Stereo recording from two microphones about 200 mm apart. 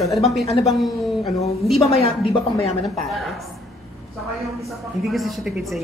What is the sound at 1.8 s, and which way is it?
Speech, 30° left (ahead or behind).